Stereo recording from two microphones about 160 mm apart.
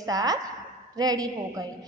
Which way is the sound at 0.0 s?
25° right (ahead or behind).